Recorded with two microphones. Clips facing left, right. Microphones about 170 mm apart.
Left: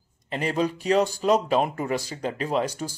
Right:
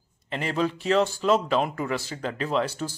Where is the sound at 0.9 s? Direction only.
15° left (ahead or behind).